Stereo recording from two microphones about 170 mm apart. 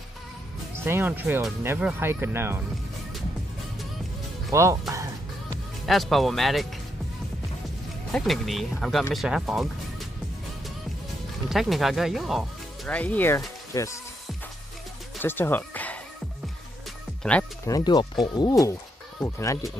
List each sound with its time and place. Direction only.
0.7 s speech: 15° right (ahead or behind)
4.5 s music: 20° right (ahead or behind)
5.9 s speech: centre (ahead or behind)
8.1 s speech: centre (ahead or behind)
11.4 s speech: centre (ahead or behind); by 13.9 s 20° left (ahead or behind)
15.2 s speech: 10° left (ahead or behind)
17.2 s speech: 5° left (ahead or behind)
17.6 s speech: 25° left (ahead or behind)